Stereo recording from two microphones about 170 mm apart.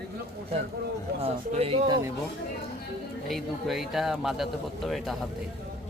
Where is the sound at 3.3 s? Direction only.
Centre (ahead or behind).